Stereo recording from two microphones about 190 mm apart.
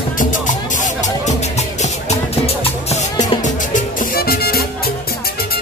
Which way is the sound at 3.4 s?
45° left (ahead or behind).